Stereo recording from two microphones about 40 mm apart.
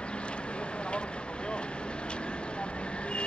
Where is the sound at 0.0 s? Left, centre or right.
Left.